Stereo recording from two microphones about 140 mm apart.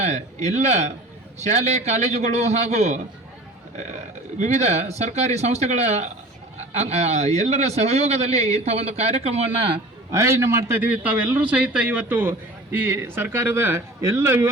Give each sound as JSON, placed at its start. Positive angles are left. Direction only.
{"t": 0.0, "sound": "a man's voice", "side_deg": -55}
{"t": 10.1, "sound": "a man's voice", "side_deg": -20}